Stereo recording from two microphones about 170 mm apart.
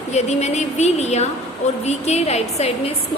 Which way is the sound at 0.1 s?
40° left (ahead or behind).